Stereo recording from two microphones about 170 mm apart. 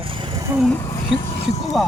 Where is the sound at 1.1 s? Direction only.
40° left (ahead or behind).